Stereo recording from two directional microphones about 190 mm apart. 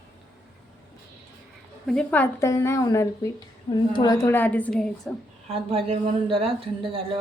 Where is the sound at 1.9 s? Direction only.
5° left (ahead or behind).